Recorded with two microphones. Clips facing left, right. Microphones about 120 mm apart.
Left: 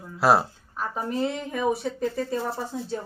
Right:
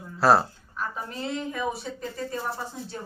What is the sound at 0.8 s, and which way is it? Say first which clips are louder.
A woman's voice: left 6 dB; 50° left (ahead or behind).